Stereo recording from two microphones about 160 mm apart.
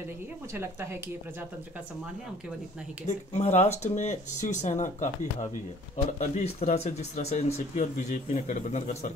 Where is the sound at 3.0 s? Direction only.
45° left (ahead or behind).